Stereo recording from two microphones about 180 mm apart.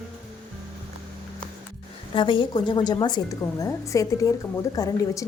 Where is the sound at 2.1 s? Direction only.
25° left (ahead or behind).